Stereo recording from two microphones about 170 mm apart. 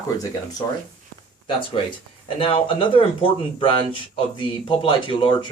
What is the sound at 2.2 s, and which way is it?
A man's voice, 30° left (ahead or behind).